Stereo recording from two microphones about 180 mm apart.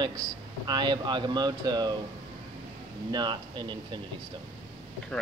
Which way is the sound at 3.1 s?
25° right (ahead or behind).